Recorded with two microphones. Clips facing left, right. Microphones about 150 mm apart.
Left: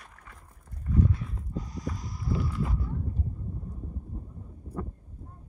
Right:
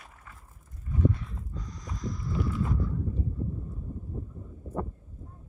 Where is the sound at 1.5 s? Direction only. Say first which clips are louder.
Left 8 dB; 5° left (ahead or behind).